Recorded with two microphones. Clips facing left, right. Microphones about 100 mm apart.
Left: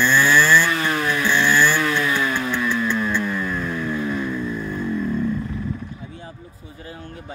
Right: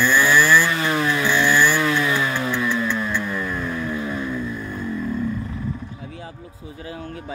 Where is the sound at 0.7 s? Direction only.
20° right (ahead or behind).